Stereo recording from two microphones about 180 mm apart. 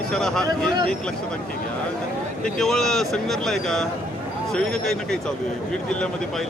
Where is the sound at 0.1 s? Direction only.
5° left (ahead or behind).